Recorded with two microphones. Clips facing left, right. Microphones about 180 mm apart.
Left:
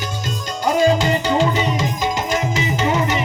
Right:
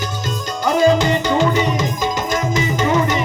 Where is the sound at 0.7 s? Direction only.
45° right (ahead or behind).